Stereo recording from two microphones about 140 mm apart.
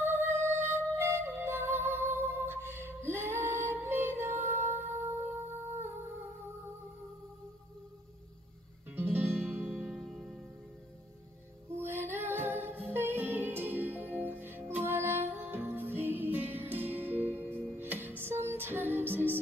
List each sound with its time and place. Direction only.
0.0 s music: 15° right (ahead or behind)
4.6 s humming: 15° right (ahead or behind)
8.9 s music: 15° right (ahead or behind)
9.8 s music: centre (ahead or behind)
11.7 s music: 15° right (ahead or behind)